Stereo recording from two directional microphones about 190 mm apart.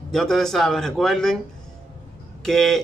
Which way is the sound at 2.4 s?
Centre (ahead or behind).